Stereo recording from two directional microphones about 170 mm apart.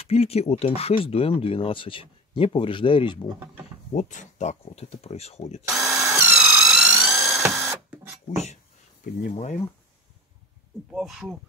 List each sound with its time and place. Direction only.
0.0 s speech: 35° left (ahead or behind)
3.9 s speech: 45° left (ahead or behind)
5.7 s drill: 5° right (ahead or behind)
6.0 s tools: 15° right (ahead or behind)
6.4 s a sound: 5° right (ahead or behind)
7.3 s printer: centre (ahead or behind)
9.2 s speech: 45° left (ahead or behind)
10.9 s speech: 5° right (ahead or behind)